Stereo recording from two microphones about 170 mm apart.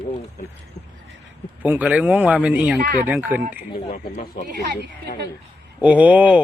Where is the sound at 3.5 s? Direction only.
55° left (ahead or behind).